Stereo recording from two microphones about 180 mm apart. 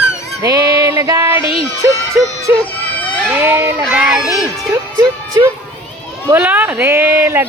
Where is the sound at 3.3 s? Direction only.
10° right (ahead or behind).